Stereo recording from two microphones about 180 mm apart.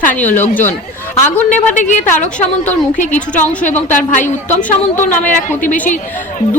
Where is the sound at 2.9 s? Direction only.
45° left (ahead or behind).